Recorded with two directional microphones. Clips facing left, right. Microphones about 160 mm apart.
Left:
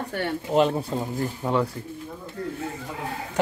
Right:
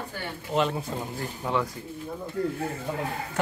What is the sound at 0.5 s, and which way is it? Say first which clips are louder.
Speech: left 5 dB; 40° left (ahead or behind).